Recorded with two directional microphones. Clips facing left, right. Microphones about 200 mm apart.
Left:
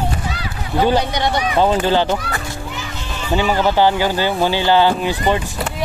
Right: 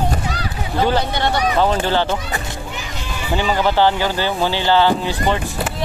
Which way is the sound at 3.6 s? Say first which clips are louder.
Even; 15° left (ahead or behind).